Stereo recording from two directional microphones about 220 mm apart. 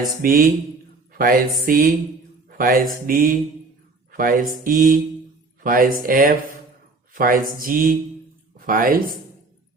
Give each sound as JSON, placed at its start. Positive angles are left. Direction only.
{"t": 0.2, "sound": "speech", "side_deg": -40}